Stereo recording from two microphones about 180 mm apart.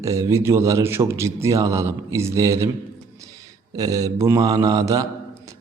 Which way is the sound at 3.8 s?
20° right (ahead or behind).